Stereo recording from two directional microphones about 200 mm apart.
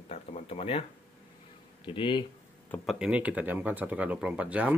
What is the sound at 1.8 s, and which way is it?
Speech, 25° left (ahead or behind).